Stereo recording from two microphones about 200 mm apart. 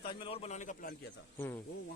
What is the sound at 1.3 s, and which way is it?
Speech, 10° left (ahead or behind).